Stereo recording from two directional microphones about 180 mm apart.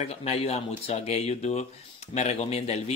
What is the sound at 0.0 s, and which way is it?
Speech, 35° left (ahead or behind).